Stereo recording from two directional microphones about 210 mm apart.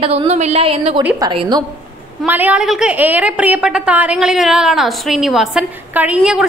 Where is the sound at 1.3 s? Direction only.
20° right (ahead or behind).